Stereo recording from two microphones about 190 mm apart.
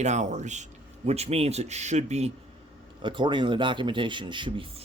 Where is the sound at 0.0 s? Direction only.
40° right (ahead or behind).